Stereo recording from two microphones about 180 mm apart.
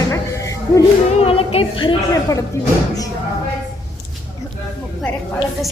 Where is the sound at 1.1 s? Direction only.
35° left (ahead or behind).